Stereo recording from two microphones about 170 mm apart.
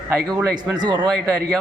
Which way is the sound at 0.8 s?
25° right (ahead or behind).